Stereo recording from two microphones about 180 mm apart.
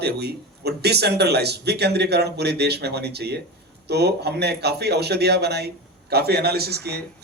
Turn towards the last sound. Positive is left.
turn(degrees=-65)  # may be behind; listen again after turning